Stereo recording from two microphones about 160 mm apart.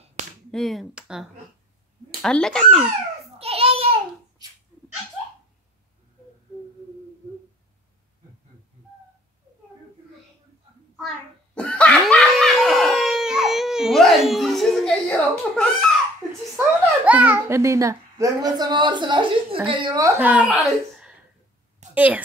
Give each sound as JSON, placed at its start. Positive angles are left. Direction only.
{"t": 0.0, "sound": "finger snapping", "side_deg": -50}
{"t": 0.5, "sound": "speech", "side_deg": 0}
{"t": 3.3, "sound": "a sound", "side_deg": -40}
{"t": 11.5, "sound": "laughter", "side_deg": 5}
{"t": 16.5, "sound": "a child's voice", "side_deg": -10}
{"t": 20.2, "sound": "speech", "side_deg": -10}
{"t": 21.9, "sound": "a woman's voice", "side_deg": -10}